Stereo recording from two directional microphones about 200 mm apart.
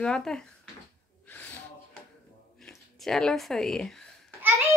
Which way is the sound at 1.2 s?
10° left (ahead or behind).